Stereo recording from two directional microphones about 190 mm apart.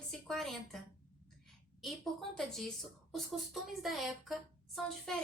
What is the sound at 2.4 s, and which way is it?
A woman's voice, centre (ahead or behind).